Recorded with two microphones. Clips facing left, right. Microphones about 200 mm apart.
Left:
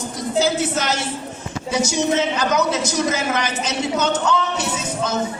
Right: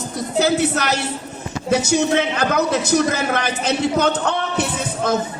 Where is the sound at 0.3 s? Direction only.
65° right (ahead or behind).